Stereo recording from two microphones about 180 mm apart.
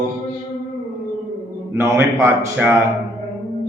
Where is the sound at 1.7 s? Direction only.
15° right (ahead or behind).